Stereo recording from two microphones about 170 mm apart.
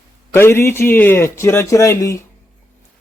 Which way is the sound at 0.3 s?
15° left (ahead or behind).